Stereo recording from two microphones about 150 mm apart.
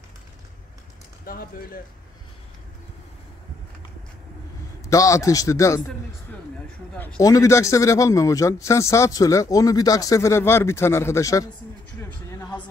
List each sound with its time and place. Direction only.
1.2 s speech: 75° left (ahead or behind)
4.8 s speech: 20° left (ahead or behind)
7.2 s speech: 20° left (ahead or behind)
12.1 s a sound: 15° left (ahead or behind)